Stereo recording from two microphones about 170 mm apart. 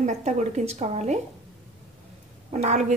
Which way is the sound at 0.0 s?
45° right (ahead or behind).